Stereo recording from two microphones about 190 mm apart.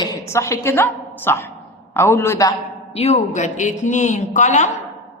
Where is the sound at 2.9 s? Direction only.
35° left (ahead or behind).